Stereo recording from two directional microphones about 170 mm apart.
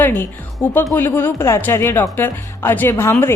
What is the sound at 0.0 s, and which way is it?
A woman's voice, 10° left (ahead or behind).